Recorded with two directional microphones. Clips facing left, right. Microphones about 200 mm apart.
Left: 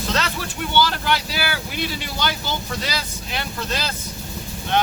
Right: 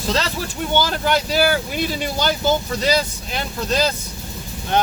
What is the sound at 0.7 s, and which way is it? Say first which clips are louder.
Speech: right 2 dB; 45° right (ahead or behind).